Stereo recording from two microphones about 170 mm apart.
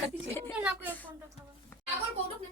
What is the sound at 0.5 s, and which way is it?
Speech, 5° right (ahead or behind).